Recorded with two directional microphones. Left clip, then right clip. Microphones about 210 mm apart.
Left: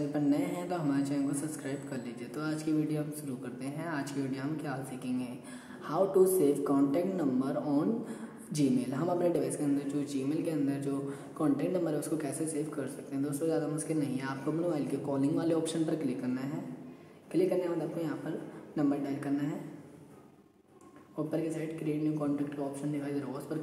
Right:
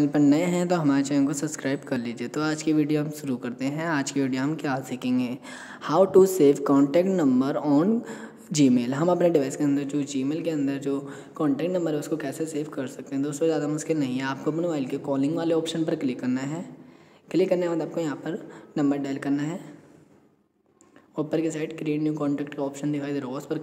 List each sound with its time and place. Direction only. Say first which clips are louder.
0.1 s a woman's voice: right 10 dB; 45° right (ahead or behind)
21.3 s speech: right 8 dB; 40° right (ahead or behind)